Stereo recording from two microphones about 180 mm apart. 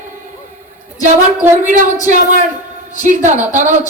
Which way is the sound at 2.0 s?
45° right (ahead or behind).